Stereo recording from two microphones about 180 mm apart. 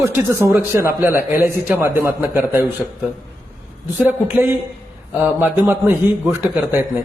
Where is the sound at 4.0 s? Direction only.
10° right (ahead or behind).